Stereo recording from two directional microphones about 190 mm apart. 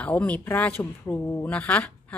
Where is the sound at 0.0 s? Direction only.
5° left (ahead or behind).